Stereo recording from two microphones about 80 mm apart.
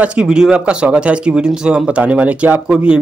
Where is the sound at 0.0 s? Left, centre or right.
Centre.